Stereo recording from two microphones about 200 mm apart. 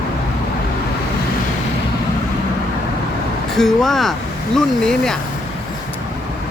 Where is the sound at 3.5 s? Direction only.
Centre (ahead or behind).